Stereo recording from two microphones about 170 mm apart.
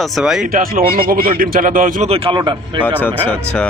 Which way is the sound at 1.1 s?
60° right (ahead or behind).